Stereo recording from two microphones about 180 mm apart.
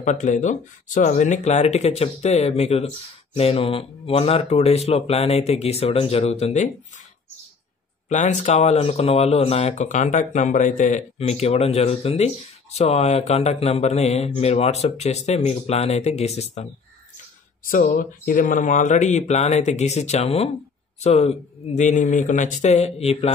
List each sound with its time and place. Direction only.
0.0 s speech: 40° left (ahead or behind)
8.1 s speech: 40° left (ahead or behind)
17.6 s speech: 50° left (ahead or behind)